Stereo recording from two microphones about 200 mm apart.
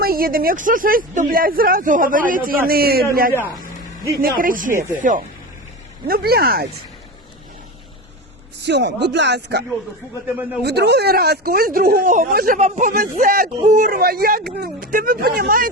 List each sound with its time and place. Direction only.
0.0 s speech: 50° right (ahead or behind)
3.3 s speech: 10° left (ahead or behind)
4.2 s speech: 45° right (ahead or behind)
8.6 s speech: 60° right (ahead or behind)
12.5 s speech: 35° right (ahead or behind)